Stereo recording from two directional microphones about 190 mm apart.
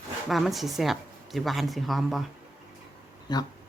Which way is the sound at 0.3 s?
Centre (ahead or behind).